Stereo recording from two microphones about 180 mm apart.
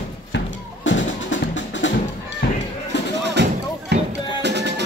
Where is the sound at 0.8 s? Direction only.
90° left.